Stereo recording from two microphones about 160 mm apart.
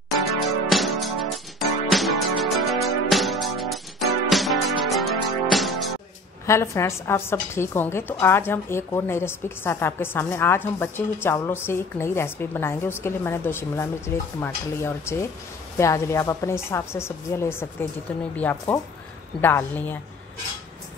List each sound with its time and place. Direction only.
0.7 s music: centre (ahead or behind)
6.4 s a woman's voice: 15° left (ahead or behind)